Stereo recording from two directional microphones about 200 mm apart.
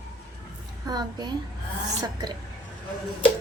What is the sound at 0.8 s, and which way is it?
Speech, 20° right (ahead or behind).